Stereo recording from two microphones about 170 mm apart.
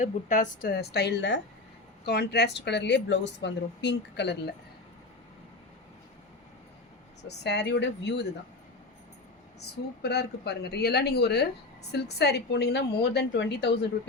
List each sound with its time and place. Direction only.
0.0 s a woman's voice: 50° left (ahead or behind); by 1.4 s 90° left
2.0 s a woman's voice: 75° left (ahead or behind)
7.3 s a woman's voice: 85° left
10.0 s a woman's voice: 75° left (ahead or behind)